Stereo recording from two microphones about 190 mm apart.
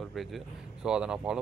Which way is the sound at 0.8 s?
5° right (ahead or behind).